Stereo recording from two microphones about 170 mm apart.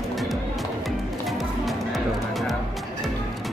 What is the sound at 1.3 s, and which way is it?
Music, centre (ahead or behind).